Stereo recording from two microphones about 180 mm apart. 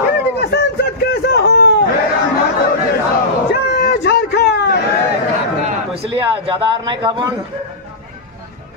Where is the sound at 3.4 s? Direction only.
65° left (ahead or behind).